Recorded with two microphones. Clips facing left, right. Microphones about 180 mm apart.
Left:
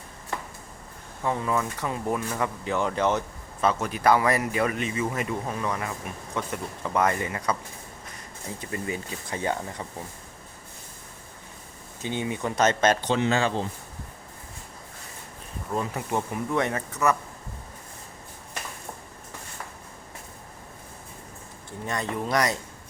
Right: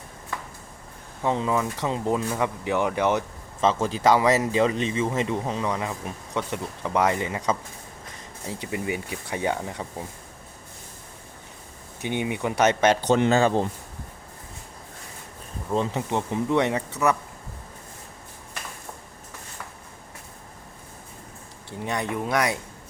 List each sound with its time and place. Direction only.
1.2 s a man's voice: 20° right (ahead or behind)
8.6 s a man's voice: 15° right (ahead or behind)
12.0 s a man's voice: 15° right (ahead or behind)
13.1 s speech: 45° right (ahead or behind)
15.7 s a man's voice: 25° right (ahead or behind)
22.1 s a man's voice: 5° right (ahead or behind)